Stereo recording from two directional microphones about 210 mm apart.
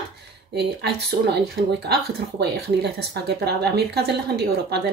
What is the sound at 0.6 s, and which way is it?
Speech, 55° right (ahead or behind).